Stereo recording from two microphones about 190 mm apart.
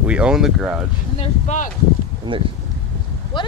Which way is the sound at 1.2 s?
40° left (ahead or behind).